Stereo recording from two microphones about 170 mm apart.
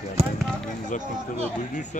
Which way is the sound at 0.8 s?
45° left (ahead or behind).